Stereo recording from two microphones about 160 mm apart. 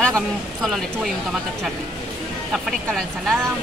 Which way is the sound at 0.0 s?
Centre (ahead or behind).